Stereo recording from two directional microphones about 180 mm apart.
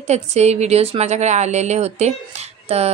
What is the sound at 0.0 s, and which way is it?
A woman's voice, 35° right (ahead or behind).